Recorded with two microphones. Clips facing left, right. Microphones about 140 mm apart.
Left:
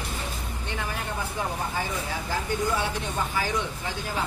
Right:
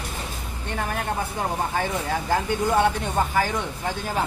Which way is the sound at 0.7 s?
50° right (ahead or behind).